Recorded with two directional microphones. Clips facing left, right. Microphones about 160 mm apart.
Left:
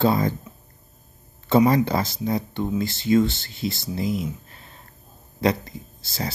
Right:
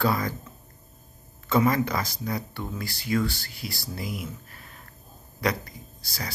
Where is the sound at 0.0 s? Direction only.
25° left (ahead or behind).